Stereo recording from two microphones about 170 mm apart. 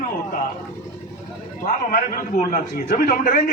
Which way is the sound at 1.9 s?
50° left (ahead or behind).